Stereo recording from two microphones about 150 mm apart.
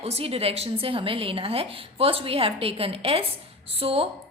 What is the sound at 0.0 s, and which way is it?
A woman's voice, 40° right (ahead or behind).